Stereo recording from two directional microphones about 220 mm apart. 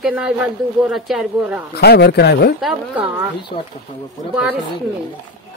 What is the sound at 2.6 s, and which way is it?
Speech, centre (ahead or behind).